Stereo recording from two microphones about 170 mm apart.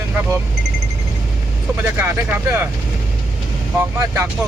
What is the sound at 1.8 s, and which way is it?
Speech, 15° right (ahead or behind).